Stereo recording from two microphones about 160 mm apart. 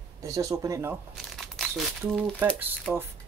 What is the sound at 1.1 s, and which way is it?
Crumpling, centre (ahead or behind).